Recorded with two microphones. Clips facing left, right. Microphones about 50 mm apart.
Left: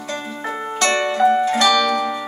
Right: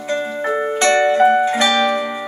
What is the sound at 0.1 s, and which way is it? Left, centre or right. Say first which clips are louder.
Music: right 7 dB; right.